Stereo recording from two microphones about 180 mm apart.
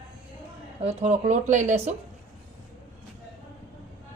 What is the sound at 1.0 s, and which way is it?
Speech, 40° right (ahead or behind).